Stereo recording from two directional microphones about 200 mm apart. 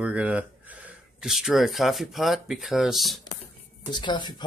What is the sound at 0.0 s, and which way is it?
Speech, 5° right (ahead or behind).